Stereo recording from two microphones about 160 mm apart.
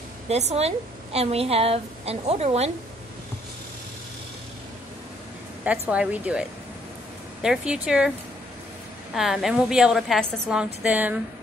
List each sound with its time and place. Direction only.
0.3 s a woman's voice: 45° right (ahead or behind)
5.6 s a woman's voice: 10° right (ahead or behind)
7.4 s a woman's voice: 5° right (ahead or behind)
9.1 s a woman's voice: centre (ahead or behind)